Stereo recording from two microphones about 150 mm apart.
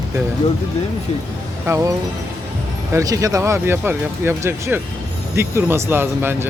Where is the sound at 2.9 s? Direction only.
20° right (ahead or behind).